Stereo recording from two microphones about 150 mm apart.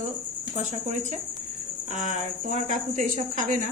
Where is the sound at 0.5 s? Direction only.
50° right (ahead or behind).